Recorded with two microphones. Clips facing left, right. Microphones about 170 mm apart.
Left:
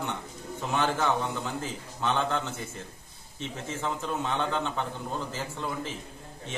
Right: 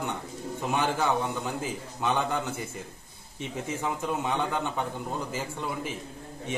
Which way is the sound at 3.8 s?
10° right (ahead or behind).